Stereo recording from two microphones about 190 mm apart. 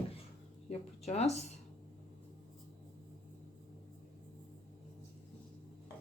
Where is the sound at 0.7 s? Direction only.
35° left (ahead or behind).